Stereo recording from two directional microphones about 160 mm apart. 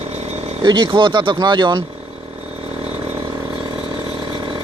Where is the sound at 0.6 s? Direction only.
30° right (ahead or behind).